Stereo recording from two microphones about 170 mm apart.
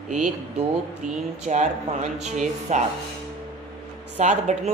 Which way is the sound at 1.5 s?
40° right (ahead or behind).